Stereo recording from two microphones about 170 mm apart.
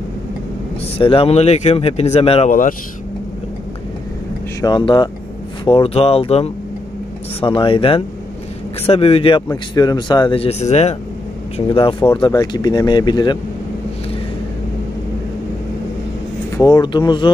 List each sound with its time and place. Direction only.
0.9 s speech: 35° left (ahead or behind)
4.6 s speech: 25° left (ahead or behind)
9.5 s speech: 25° left (ahead or behind)
16.5 s speech: 25° left (ahead or behind)